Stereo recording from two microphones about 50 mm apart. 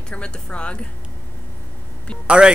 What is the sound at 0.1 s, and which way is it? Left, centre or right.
Speech, left.